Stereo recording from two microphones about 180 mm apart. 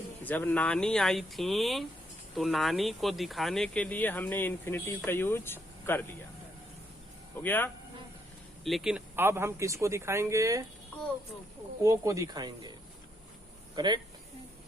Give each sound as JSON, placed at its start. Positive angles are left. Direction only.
{"t": 0.3, "sound": "speech", "side_deg": 10}
{"t": 7.4, "sound": "speech", "side_deg": 10}
{"t": 8.6, "sound": "speech", "side_deg": 0}
{"t": 11.8, "sound": "speech", "side_deg": -15}
{"t": 13.7, "sound": "speech", "side_deg": -25}